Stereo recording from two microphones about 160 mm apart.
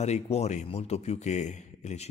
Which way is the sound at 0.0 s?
45° left (ahead or behind).